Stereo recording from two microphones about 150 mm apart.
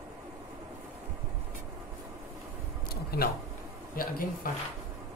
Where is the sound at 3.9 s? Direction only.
75° left (ahead or behind).